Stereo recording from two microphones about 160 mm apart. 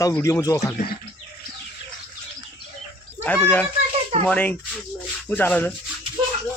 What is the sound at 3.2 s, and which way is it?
Speech, 10° left (ahead or behind).